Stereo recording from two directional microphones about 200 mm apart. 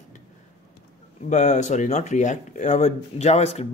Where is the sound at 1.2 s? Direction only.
35° left (ahead or behind).